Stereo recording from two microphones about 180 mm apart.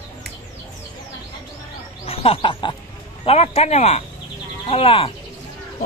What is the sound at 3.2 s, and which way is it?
A man's voice, 35° left (ahead or behind).